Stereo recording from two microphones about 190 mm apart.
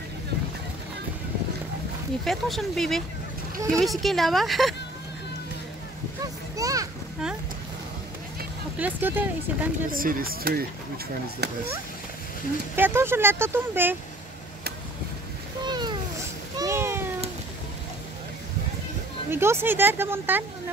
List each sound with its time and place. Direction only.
2.2 s a woman's voice: centre (ahead or behind)
6.5 s a sound: 20° right (ahead or behind)
8.7 s speech: 10° right (ahead or behind)
9.8 s speech: 50° right (ahead or behind)
12.7 s speech: 10° right (ahead or behind)
15.6 s a sound: 25° right (ahead or behind)
19.3 s speech: 10° right (ahead or behind)